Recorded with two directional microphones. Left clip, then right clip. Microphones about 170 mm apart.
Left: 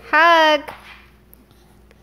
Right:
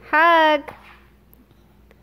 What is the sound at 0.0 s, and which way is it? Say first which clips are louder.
Speech: left 2 dB; 10° right (ahead or behind).